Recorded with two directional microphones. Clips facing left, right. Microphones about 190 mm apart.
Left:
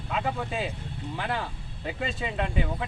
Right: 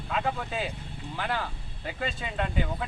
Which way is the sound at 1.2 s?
5° left (ahead or behind).